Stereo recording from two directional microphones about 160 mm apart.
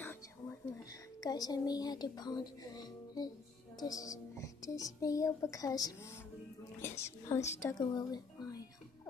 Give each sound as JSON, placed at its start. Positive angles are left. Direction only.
{"t": 0.0, "sound": "whispering", "side_deg": 15}
{"t": 1.2, "sound": "a woman's voice", "side_deg": 25}